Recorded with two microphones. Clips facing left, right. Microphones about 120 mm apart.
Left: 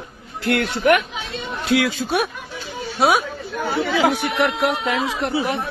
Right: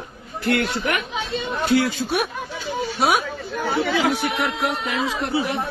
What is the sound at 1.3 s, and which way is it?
Speech, 90° left.